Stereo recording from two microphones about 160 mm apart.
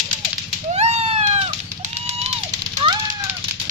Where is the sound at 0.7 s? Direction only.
40° right (ahead or behind).